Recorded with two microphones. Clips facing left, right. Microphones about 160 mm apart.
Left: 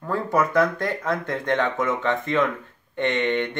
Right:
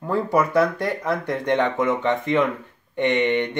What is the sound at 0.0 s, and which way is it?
Speech, 15° right (ahead or behind).